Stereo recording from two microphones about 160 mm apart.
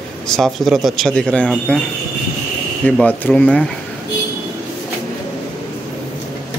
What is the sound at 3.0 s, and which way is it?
Speech, 10° left (ahead or behind).